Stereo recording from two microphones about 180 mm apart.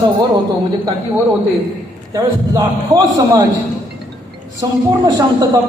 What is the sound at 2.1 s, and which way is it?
A man's voice, 20° right (ahead or behind).